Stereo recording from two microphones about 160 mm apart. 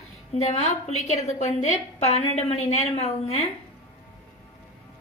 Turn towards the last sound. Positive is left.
turn(degrees=40)  # may be behind; listen again after turning